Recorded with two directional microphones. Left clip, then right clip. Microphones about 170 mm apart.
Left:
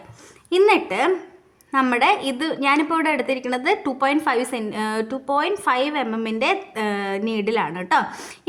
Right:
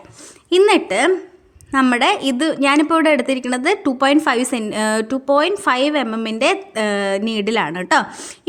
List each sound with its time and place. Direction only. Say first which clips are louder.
0.5 s a woman's voice: right 3 dB; 35° right (ahead or behind)
8.1 s a woman's voice: right 1 dB; 15° right (ahead or behind)